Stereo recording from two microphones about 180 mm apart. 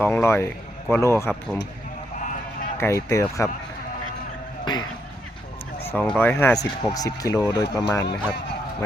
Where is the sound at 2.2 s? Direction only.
45° left (ahead or behind).